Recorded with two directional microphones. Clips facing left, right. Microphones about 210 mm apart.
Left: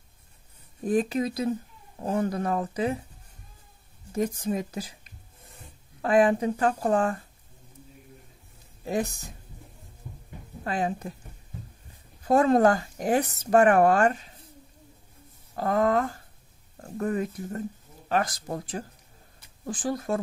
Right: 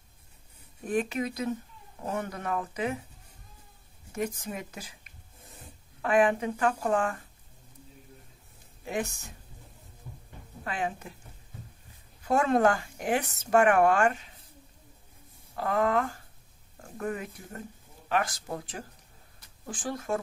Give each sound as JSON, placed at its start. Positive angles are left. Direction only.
{"t": 0.8, "sound": "speech", "side_deg": 35}
{"t": 4.1, "sound": "speech", "side_deg": 35}
{"t": 6.0, "sound": "speech", "side_deg": 35}
{"t": 8.8, "sound": "speech", "side_deg": 35}
{"t": 10.6, "sound": "speech", "side_deg": 35}
{"t": 12.3, "sound": "speech", "side_deg": 35}
{"t": 15.5, "sound": "speech", "side_deg": 40}